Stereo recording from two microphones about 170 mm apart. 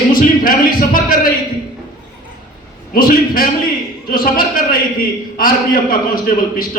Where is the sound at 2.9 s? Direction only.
60° left (ahead or behind).